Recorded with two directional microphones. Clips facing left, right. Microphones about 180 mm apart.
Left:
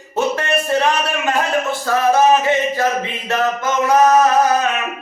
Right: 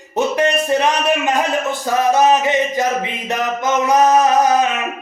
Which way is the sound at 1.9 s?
20° right (ahead or behind).